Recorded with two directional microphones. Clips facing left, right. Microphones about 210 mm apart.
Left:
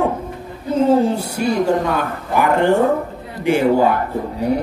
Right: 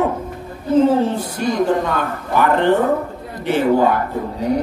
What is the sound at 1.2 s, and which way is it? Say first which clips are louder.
Speech: even; 10° left (ahead or behind).